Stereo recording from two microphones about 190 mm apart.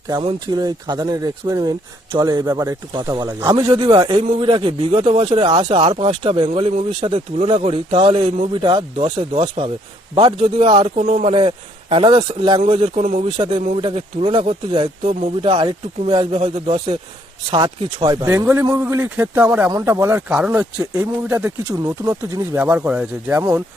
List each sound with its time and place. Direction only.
0.1 s speech: 25° right (ahead or behind)